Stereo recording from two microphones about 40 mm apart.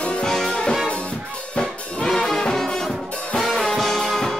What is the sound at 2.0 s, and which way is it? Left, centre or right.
Brass instrument, centre.